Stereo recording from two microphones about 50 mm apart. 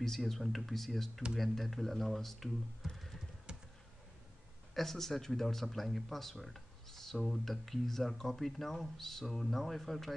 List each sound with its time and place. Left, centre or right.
0.0 s speech: centre
3.5 s computer keyboard: centre
4.7 s speech: centre
6.4 s a sound: centre
7.2 s speech: centre